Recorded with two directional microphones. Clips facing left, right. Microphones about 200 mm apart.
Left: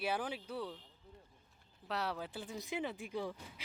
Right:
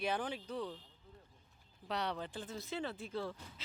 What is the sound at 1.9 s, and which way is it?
Speech, 5° left (ahead or behind).